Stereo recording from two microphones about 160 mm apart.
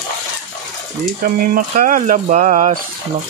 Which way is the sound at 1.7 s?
55° right (ahead or behind).